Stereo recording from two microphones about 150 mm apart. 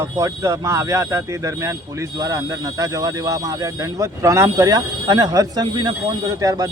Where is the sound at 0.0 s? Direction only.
20° right (ahead or behind).